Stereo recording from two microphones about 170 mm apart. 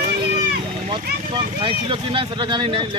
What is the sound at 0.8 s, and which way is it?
A man's voice, 30° right (ahead or behind).